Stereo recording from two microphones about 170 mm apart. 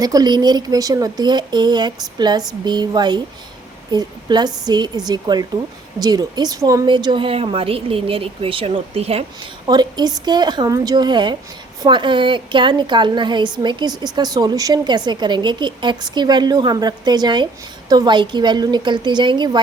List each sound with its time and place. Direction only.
0.0 s a woman's voice: 25° right (ahead or behind)
9.6 s a woman's voice: 25° right (ahead or behind)